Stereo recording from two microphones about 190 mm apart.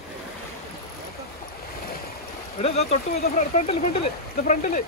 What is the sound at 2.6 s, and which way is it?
Speech, 35° left (ahead or behind).